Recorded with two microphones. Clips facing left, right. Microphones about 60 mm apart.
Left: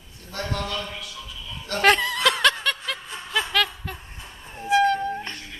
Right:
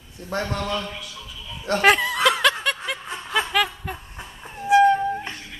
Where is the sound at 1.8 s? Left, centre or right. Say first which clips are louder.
Right 1 dB; centre.